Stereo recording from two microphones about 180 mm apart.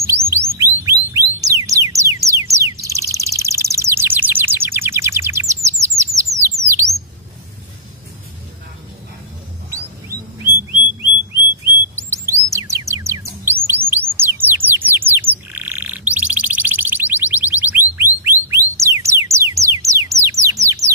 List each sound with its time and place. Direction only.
0.6 s music: 15° right (ahead or behind)
6.4 s bird: 15° right (ahead or behind)
9.7 s bird: 15° right (ahead or behind)
12.1 s chirp: 15° right (ahead or behind)
14.4 s bird: 10° right (ahead or behind)
15.5 s alarm: 10° right (ahead or behind)